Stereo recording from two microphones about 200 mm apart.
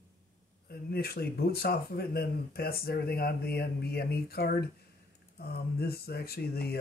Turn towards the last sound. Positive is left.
turn(degrees=50)  # may be behind; listen again after turning